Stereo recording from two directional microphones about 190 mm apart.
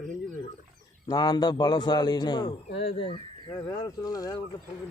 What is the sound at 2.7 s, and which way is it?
Speech, 65° left (ahead or behind).